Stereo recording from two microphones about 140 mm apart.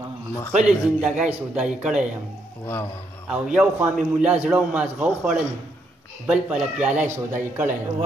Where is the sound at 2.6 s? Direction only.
15° left (ahead or behind).